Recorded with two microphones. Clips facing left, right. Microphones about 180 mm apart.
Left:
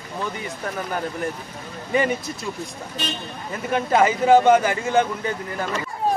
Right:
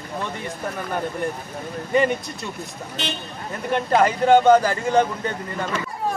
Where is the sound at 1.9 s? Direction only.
Centre (ahead or behind).